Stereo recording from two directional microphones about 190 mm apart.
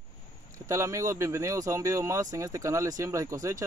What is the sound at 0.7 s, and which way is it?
Speech, 15° right (ahead or behind).